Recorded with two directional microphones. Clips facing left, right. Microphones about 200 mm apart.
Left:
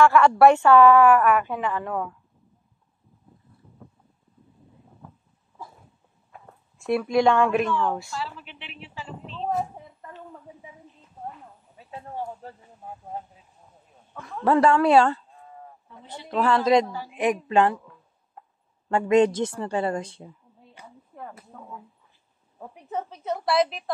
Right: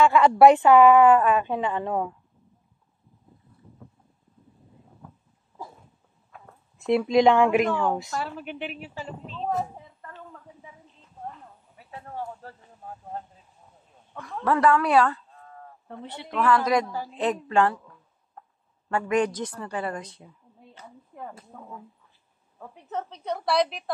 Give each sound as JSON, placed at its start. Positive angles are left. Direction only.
{"t": 0.0, "sound": "a woman's voice", "side_deg": -15}
{"t": 6.8, "sound": "speech", "side_deg": -20}
{"t": 8.2, "sound": "a woman's voice", "side_deg": -50}
{"t": 10.0, "sound": "a woman's voice", "side_deg": 15}
{"t": 11.8, "sound": "speech", "side_deg": 20}
{"t": 14.2, "sound": "speech", "side_deg": 25}
{"t": 15.3, "sound": "a sound", "side_deg": 15}
{"t": 15.9, "sound": "speech", "side_deg": -60}
{"t": 16.3, "sound": "speech", "side_deg": 30}
{"t": 17.1, "sound": "a woman's voice", "side_deg": 15}
{"t": 18.9, "sound": "speech", "side_deg": 25}
{"t": 22.6, "sound": "a woman's voice", "side_deg": 10}